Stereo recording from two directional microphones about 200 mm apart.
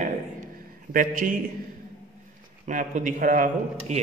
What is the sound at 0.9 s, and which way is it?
Speech, 40° right (ahead or behind).